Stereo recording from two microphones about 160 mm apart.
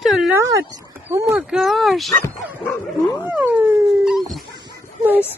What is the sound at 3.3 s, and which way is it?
Dog, 10° right (ahead or behind).